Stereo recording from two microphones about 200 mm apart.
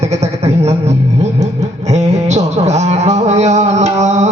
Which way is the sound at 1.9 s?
35° right (ahead or behind).